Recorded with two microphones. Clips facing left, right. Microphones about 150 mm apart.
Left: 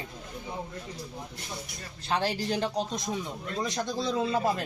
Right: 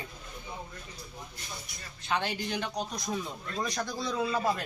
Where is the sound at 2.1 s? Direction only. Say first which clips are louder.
Left 3 dB; 35° left (ahead or behind).